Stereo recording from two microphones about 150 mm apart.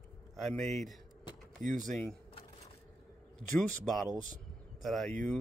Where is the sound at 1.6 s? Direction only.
60° right (ahead or behind).